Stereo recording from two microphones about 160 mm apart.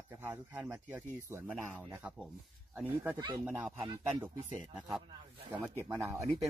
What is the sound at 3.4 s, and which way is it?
Speech, 10° right (ahead or behind).